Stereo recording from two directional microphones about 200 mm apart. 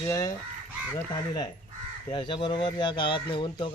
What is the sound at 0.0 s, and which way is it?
Goose, 15° left (ahead or behind).